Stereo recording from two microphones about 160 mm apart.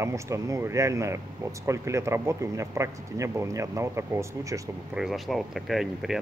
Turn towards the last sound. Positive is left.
turn(degrees=0)  # may be behind; listen again after turning